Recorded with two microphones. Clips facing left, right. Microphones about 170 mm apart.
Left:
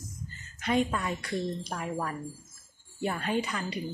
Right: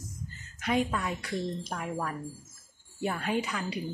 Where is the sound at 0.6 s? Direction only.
5° right (ahead or behind).